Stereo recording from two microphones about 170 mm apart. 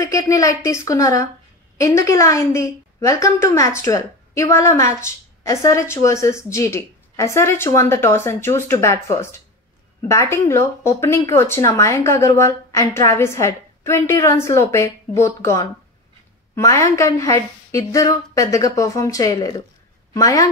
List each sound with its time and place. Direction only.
0.0 s a woman's voice: 20° left (ahead or behind)